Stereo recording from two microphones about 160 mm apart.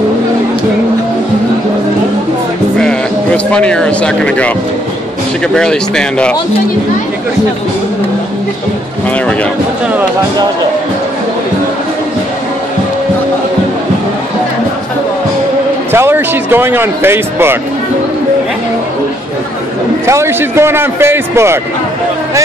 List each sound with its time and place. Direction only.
2.8 s speech: 5° left (ahead or behind)
5.5 s speech: 5° left (ahead or behind)
15.9 s speech: 15° right (ahead or behind)
20.1 s a man's voice: 15° right (ahead or behind)